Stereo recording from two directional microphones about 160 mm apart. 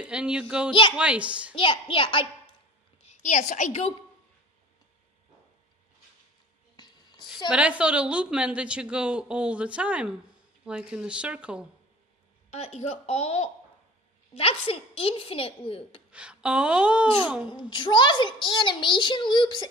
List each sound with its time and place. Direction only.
0.0 s a woman's voice: 5° right (ahead or behind)
1.5 s a woman's voice: 35° left (ahead or behind)
3.0 s a woman's voice: 45° left (ahead or behind)
6.8 s a sound: 25° left (ahead or behind)
7.4 s a woman's voice: 5° right (ahead or behind)
12.4 s a woman's voice: 40° left (ahead or behind)
16.1 s a woman's voice: 5° right (ahead or behind)
17.5 s a child's voice: 30° left (ahead or behind)